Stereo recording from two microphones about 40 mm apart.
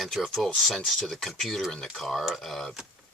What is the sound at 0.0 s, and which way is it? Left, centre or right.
Speech, centre.